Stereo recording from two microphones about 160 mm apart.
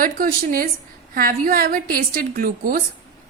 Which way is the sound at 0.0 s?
60° right (ahead or behind).